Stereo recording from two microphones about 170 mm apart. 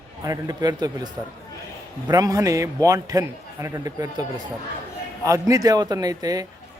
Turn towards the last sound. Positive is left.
turn(degrees=-20)  # may be behind; listen again after turning